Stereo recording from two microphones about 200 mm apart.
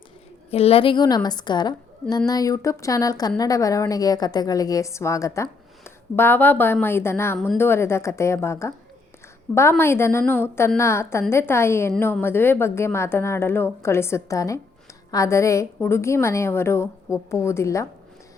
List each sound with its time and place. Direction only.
0.5 s a woman's voice: 30° left (ahead or behind)